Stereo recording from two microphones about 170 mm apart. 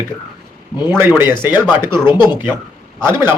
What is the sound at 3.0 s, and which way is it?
Speech, 15° right (ahead or behind).